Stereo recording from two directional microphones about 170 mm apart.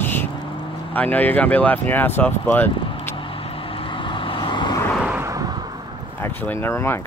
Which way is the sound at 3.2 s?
30° left (ahead or behind).